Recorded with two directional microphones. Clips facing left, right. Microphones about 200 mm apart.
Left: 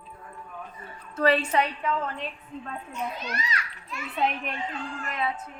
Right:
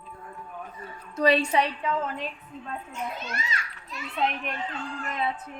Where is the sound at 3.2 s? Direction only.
25° right (ahead or behind).